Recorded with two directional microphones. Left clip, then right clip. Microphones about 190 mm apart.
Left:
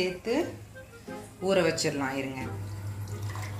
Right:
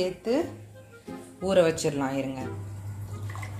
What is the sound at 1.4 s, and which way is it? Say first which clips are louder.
Speech: right 3 dB; 40° right (ahead or behind).